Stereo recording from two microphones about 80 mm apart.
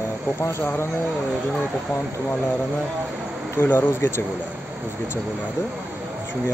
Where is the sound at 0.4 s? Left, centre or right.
Left.